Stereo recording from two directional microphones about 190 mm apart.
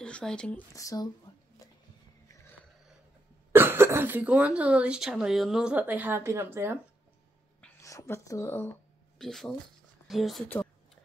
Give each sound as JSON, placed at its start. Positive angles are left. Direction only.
{"t": 0.0, "sound": "speech", "side_deg": 5}
{"t": 0.7, "sound": "speech", "side_deg": 20}
{"t": 1.6, "sound": "a sound", "side_deg": 20}
{"t": 3.5, "sound": "speech", "side_deg": -10}
{"t": 7.6, "sound": "speech", "side_deg": 15}